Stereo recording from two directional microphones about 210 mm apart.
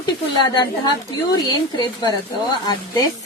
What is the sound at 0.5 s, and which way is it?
A woman's voice, 20° left (ahead or behind).